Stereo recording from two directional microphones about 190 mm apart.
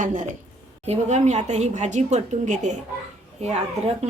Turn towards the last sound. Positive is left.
turn(degrees=-35)  # may be behind; listen again after turning